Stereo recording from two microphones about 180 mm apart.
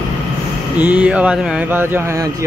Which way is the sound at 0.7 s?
10° right (ahead or behind).